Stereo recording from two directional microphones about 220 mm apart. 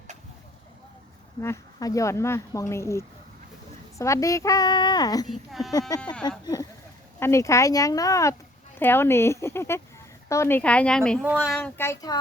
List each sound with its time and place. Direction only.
1.4 s speech: 15° left (ahead or behind)
5.5 s speech: centre (ahead or behind)
6.2 s speech: 15° left (ahead or behind)